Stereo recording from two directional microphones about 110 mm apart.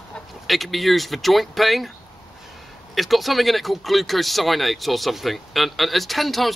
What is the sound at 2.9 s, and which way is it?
Speech, centre (ahead or behind).